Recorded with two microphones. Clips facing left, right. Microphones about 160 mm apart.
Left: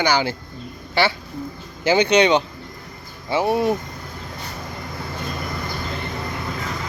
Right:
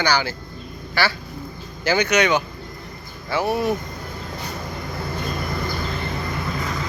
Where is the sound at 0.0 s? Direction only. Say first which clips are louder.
Left 2 dB; 20° left (ahead or behind).